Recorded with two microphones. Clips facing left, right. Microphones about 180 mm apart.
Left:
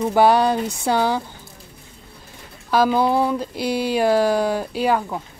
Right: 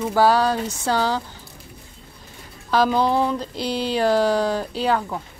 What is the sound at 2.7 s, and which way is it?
Speech, 10° left (ahead or behind).